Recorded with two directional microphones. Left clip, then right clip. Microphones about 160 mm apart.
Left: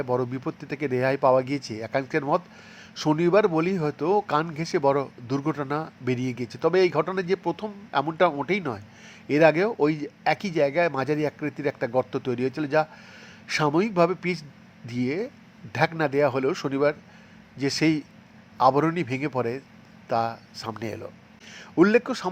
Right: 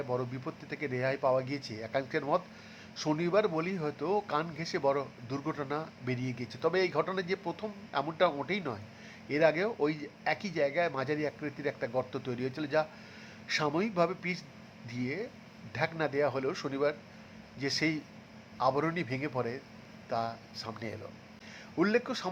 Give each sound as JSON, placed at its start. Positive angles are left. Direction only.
{"t": 0.0, "sound": "a man's voice", "side_deg": 30}